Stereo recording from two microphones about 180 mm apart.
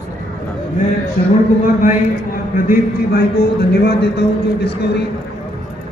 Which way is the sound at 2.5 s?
55° left (ahead or behind).